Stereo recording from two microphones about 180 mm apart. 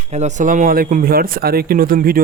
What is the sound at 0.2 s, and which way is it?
A man's voice, 45° right (ahead or behind).